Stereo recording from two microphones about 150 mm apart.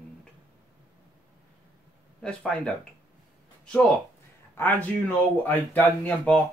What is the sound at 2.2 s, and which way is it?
Speech, 5° left (ahead or behind).